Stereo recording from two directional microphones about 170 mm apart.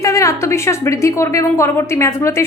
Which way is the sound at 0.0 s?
20° left (ahead or behind).